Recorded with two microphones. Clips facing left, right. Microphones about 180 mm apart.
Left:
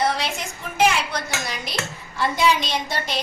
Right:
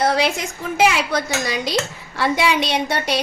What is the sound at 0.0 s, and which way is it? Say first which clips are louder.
A woman's voice: right 5 dB; 90° right.